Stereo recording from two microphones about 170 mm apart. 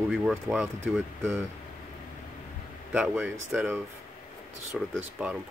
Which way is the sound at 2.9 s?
5° right (ahead or behind).